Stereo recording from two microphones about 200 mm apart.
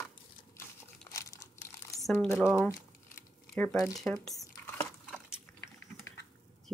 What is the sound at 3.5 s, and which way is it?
Speech, 5° left (ahead or behind).